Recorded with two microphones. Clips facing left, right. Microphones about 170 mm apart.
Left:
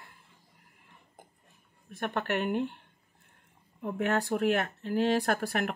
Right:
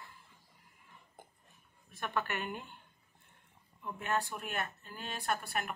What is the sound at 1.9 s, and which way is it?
Speech, 60° left (ahead or behind).